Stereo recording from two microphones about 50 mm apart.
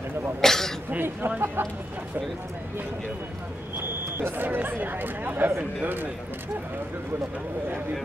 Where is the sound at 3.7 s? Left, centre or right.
Right.